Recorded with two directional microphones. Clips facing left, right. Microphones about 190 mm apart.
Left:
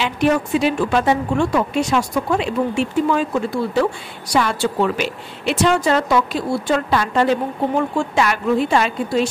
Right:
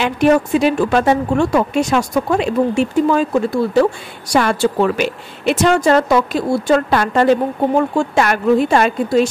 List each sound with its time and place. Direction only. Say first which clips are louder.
0.0 s speech: right 4 dB; 45° right (ahead or behind)